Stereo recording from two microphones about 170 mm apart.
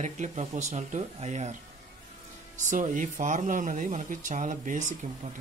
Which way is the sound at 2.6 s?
50° right (ahead or behind).